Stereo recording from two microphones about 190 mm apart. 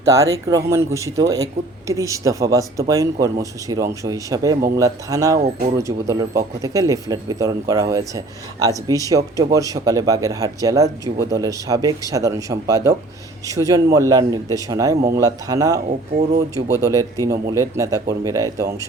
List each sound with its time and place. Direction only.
0.0 s speech: 15° right (ahead or behind)
15.9 s speech: 35° right (ahead or behind)
16.6 s speech: 15° right (ahead or behind)